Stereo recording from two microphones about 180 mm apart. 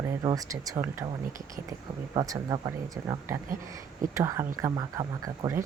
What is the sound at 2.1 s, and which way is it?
Speech, 20° right (ahead or behind).